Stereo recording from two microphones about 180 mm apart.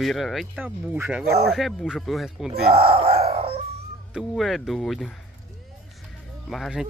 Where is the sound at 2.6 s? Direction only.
35° right (ahead or behind).